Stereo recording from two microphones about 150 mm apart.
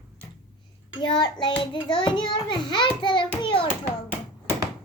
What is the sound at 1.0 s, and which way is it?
A child's voice, 30° left (ahead or behind).